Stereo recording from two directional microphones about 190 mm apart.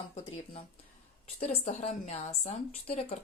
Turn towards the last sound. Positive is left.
turn(degrees=30)  # may be behind; listen again after turning